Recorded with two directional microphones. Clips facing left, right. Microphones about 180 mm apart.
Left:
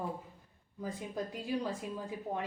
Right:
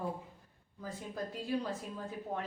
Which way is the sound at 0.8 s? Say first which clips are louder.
Left 2 dB; 15° left (ahead or behind).